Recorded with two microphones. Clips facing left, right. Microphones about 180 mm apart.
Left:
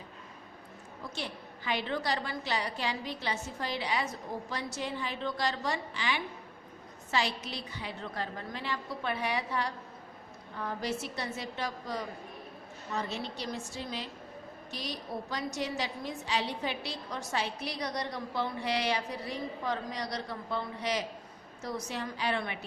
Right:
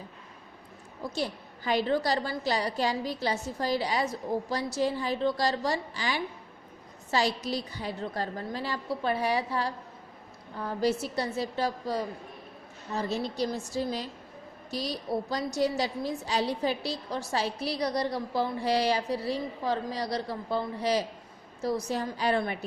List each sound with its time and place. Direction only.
1.1 s a woman's voice: 40° right (ahead or behind)